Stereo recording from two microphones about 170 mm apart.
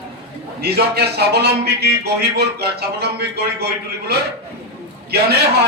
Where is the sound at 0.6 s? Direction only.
70° right (ahead or behind).